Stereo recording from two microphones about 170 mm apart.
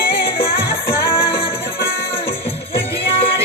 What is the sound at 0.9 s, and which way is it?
Music, 15° left (ahead or behind).